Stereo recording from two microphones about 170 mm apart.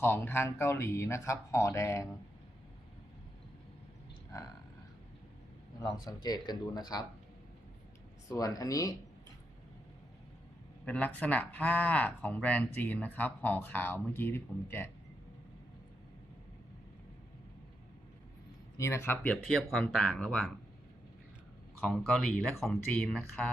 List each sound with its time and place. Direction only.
0.0 s speech: 15° left (ahead or behind)
6.2 s speech: 25° left (ahead or behind)
8.3 s speech: 20° left (ahead or behind)
10.8 s speech: 10° left (ahead or behind)
18.8 s speech: 15° left (ahead or behind)
21.8 s speech: centre (ahead or behind)